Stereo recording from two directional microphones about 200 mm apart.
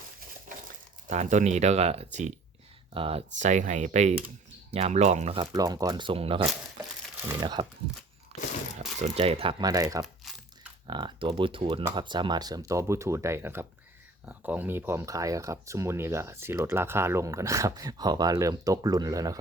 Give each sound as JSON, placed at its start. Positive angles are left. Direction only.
{"t": 1.0, "sound": "speech", "side_deg": -35}
{"t": 5.4, "sound": "speech", "side_deg": -20}
{"t": 9.0, "sound": "speech", "side_deg": -30}